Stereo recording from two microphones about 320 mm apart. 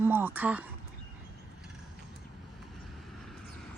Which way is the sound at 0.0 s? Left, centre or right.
Centre.